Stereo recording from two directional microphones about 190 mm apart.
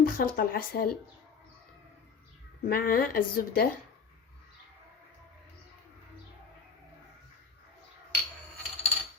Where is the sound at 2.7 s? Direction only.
50° left (ahead or behind).